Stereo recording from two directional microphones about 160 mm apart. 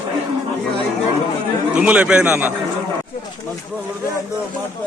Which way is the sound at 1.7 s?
10° right (ahead or behind).